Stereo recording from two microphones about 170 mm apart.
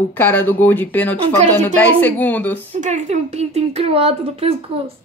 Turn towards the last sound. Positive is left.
turn(degrees=-35)  # may be behind; listen again after turning